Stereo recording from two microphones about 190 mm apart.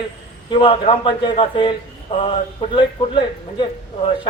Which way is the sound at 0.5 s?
30° left (ahead or behind).